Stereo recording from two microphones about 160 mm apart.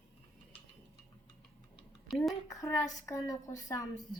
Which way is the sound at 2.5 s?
20° left (ahead or behind).